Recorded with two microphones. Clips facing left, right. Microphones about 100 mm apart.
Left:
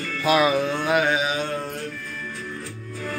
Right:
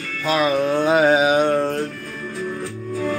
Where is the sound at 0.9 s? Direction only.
40° right (ahead or behind); by 1.6 s 55° right (ahead or behind).